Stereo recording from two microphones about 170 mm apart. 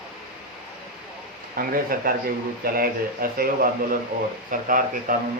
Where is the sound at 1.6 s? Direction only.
60° right (ahead or behind).